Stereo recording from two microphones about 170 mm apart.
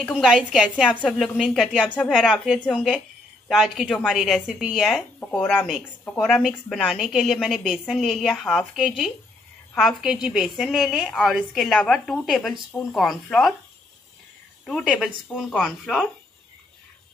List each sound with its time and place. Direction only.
0.0 s a woman's voice: 5° left (ahead or behind)
0.3 s a woman's voice: 5° right (ahead or behind)
5.6 s a woman's voice: 5° right (ahead or behind)
14.7 s a woman's voice: centre (ahead or behind)